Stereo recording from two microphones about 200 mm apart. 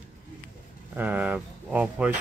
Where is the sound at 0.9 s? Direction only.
10° right (ahead or behind).